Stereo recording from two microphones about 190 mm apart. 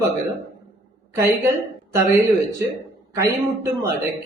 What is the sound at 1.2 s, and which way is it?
Speech, 15° right (ahead or behind).